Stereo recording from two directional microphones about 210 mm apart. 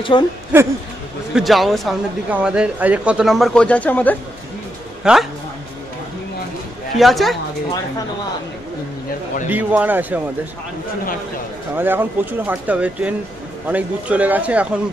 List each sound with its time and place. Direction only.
0.1 s a woman's voice: 20° left (ahead or behind)
0.5 s speech: 10° right (ahead or behind); by 4.2 s 10° left (ahead or behind)
5.1 s speech: 5° right (ahead or behind)
7.0 s speech: centre (ahead or behind)
9.5 s speech: 10° right (ahead or behind)
11.7 s speech: 10° right (ahead or behind)